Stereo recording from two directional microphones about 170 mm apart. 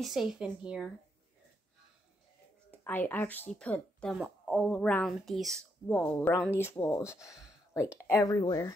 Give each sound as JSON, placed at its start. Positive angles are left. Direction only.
{"t": 0.0, "sound": "speech", "side_deg": 0}
{"t": 2.7, "sound": "speech", "side_deg": 10}